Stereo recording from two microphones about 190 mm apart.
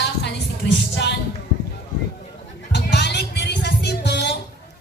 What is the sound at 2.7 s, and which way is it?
Music, 65° left (ahead or behind).